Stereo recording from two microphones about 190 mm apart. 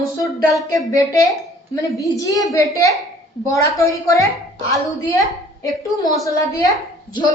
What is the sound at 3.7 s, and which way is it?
A woman's voice, 15° left (ahead or behind).